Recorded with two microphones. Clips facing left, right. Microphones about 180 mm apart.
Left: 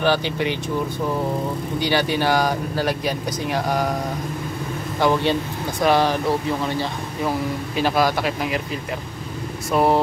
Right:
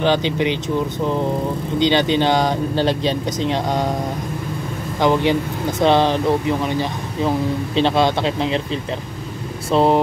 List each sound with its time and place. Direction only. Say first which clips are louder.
0.0 s speech: right 3 dB; 20° right (ahead or behind)
1.8 s speech: right 5 dB; 20° right (ahead or behind)
5.0 s speech: right 3 dB; 15° right (ahead or behind)
9.7 s speech: right 3 dB; 25° right (ahead or behind)